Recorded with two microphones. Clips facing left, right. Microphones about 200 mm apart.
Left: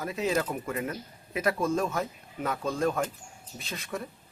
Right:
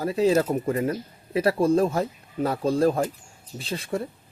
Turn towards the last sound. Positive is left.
turn(degrees=-30)  # may be behind; listen again after turning